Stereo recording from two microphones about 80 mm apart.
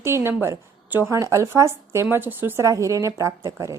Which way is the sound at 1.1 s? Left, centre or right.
Right.